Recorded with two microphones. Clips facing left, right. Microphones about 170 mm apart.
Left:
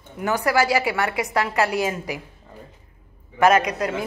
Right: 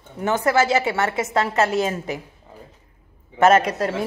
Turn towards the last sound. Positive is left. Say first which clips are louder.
# right 2 dB
turn(degrees=-30)  # may be behind; listen again after turning